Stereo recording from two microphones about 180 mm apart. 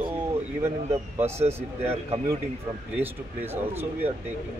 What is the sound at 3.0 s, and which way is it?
Speech, 10° right (ahead or behind).